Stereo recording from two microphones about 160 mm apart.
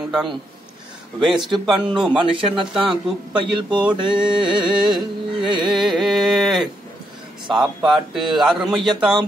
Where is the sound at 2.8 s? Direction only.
30° right (ahead or behind).